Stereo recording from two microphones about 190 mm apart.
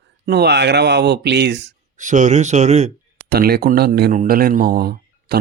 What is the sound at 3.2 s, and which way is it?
Speech, 55° right (ahead or behind).